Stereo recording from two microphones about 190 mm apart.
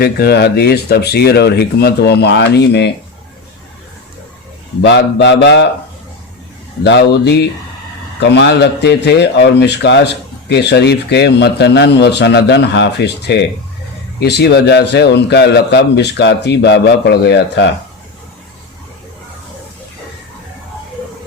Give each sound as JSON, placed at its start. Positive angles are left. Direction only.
{"t": 0.0, "sound": "a man's voice", "side_deg": 60}
{"t": 4.8, "sound": "speech", "side_deg": 65}
{"t": 6.8, "sound": "a man's voice", "side_deg": 65}